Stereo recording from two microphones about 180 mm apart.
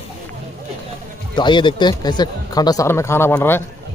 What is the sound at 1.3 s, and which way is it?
A man's voice, 25° left (ahead or behind).